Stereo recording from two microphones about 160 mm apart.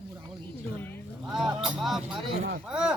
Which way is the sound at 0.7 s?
10° left (ahead or behind).